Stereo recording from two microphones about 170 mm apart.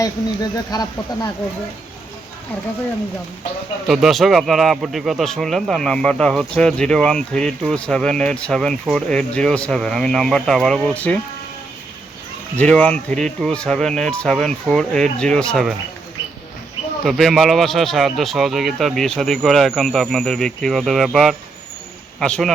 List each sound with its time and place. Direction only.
0.5 s speech: 25° left (ahead or behind)
3.8 s a man's voice: centre (ahead or behind)
12.5 s a man's voice: 5° left (ahead or behind)
17.1 s a man's voice: centre (ahead or behind)